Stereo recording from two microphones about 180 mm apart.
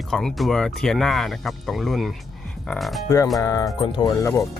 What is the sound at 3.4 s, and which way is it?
Speech, 20° left (ahead or behind).